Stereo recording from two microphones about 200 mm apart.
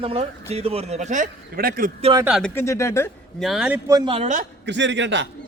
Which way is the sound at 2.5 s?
15° left (ahead or behind).